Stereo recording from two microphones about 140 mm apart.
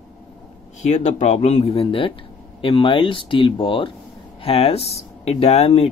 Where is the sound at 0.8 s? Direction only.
55° left (ahead or behind).